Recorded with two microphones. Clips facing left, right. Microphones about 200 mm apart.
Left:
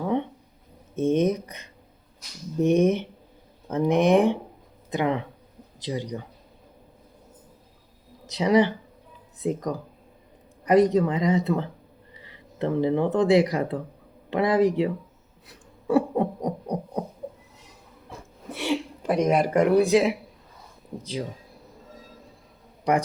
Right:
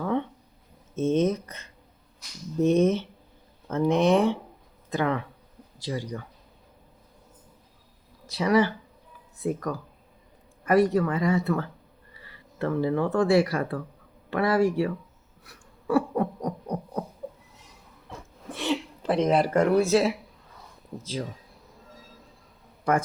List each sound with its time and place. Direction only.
0.0 s a sound: 20° left (ahead or behind)
0.9 s speech: 15° left (ahead or behind)
8.3 s speech: 20° left (ahead or behind)
15.4 s a sound: 20° left (ahead or behind)
18.5 s speech: 10° left (ahead or behind)
22.8 s a man's voice: 15° left (ahead or behind)